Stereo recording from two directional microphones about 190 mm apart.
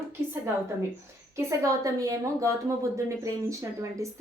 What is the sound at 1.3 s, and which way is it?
A woman's voice, 15° right (ahead or behind).